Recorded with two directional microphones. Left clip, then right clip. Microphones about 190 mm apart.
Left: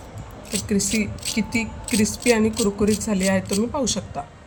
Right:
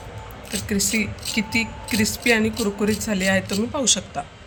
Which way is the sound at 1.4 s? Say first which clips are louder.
Right 3 dB; 45° left (ahead or behind).